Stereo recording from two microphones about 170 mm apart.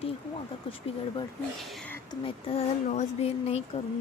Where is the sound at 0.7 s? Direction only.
30° left (ahead or behind).